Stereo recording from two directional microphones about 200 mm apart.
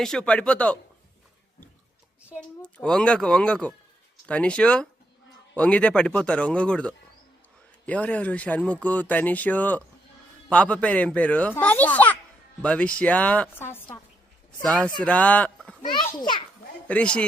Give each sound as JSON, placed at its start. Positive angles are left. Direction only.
{"t": 0.0, "sound": "speech", "side_deg": 5}
{"t": 2.6, "sound": "speech", "side_deg": 5}
{"t": 15.9, "sound": "a child's voice", "side_deg": 20}
{"t": 16.9, "sound": "speech", "side_deg": 5}